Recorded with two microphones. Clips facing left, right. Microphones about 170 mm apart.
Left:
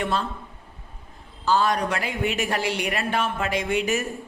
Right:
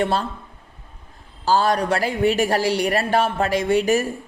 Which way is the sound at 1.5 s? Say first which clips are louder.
Right 3 dB; 35° right (ahead or behind).